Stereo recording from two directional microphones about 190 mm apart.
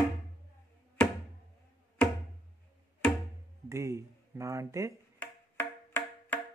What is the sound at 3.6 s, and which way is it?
Speech, 15° right (ahead or behind).